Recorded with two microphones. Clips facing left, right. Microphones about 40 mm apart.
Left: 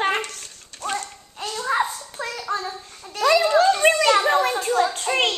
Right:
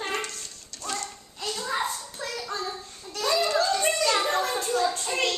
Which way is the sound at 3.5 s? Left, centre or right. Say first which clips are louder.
Left 8 dB; left.